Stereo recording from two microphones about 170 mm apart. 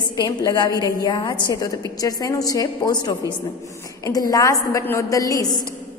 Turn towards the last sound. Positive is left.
turn(degrees=20)  # may be behind; listen again after turning